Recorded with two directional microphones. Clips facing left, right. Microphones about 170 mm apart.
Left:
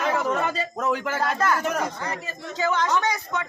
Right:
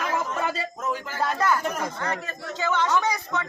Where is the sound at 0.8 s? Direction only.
70° left (ahead or behind).